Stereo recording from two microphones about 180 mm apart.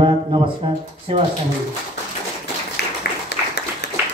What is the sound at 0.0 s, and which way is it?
Speech, 30° right (ahead or behind).